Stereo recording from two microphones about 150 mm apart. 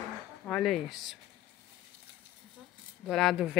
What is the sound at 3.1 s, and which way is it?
Speech, centre (ahead or behind).